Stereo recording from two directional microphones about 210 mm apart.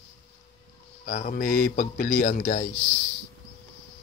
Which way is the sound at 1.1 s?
40° left (ahead or behind).